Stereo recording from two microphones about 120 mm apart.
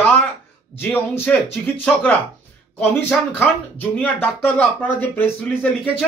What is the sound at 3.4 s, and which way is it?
Speech, 15° left (ahead or behind).